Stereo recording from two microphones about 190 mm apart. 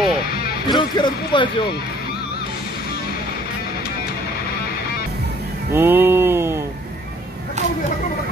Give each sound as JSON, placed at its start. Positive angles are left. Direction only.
{"t": 0.7, "sound": "speech", "side_deg": 25}
{"t": 5.7, "sound": "music", "side_deg": -10}